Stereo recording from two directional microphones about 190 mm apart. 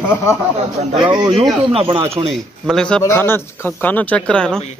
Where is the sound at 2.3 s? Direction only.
5° left (ahead or behind).